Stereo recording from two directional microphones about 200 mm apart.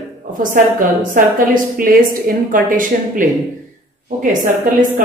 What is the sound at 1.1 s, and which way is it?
A woman's voice, 45° right (ahead or behind).